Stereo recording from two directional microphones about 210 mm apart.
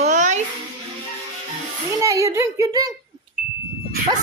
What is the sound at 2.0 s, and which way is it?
Child singing, 15° right (ahead or behind).